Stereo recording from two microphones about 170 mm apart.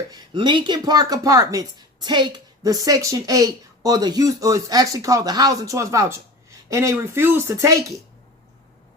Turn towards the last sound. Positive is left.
turn(degrees=-20)  # may be behind; listen again after turning